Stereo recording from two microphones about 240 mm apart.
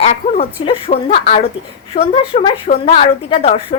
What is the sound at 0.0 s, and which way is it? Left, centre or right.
A woman's voice, left.